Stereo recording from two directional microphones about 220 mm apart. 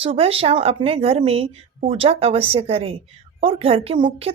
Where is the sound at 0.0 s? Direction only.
25° right (ahead or behind).